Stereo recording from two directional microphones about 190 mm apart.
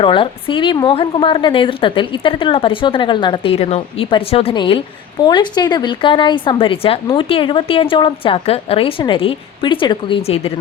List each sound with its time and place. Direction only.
0.0 s a woman's voice: 25° left (ahead or behind)